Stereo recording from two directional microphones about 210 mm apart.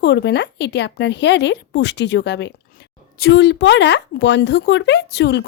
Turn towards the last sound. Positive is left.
turn(degrees=55)  # may be behind; listen again after turning